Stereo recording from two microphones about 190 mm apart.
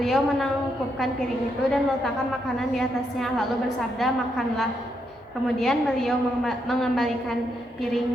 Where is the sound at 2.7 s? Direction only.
Centre (ahead or behind).